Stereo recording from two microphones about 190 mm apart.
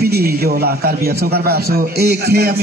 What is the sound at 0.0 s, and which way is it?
A man's voice, 55° right (ahead or behind).